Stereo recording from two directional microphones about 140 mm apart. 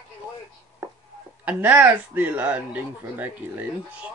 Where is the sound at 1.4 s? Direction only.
10° right (ahead or behind).